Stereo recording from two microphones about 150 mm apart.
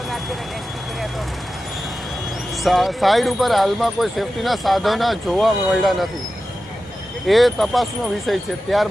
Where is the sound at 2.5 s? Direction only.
Centre (ahead or behind).